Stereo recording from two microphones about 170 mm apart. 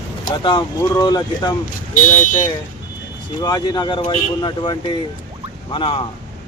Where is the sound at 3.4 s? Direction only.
25° left (ahead or behind).